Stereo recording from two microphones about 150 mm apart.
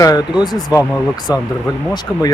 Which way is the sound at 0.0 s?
25° left (ahead or behind).